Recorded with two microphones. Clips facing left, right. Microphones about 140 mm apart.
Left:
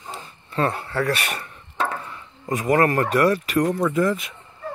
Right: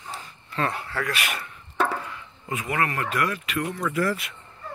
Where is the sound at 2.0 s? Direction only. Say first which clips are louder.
Left 4 dB; 35° left (ahead or behind).